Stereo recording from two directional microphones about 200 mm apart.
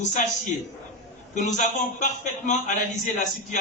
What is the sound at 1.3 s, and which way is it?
A man's voice, 35° left (ahead or behind).